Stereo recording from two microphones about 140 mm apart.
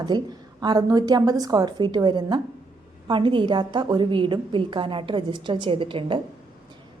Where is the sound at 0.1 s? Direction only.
30° right (ahead or behind).